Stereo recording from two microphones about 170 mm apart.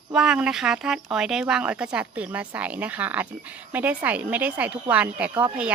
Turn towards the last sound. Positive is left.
turn(degrees=-10)  # may be behind; listen again after turning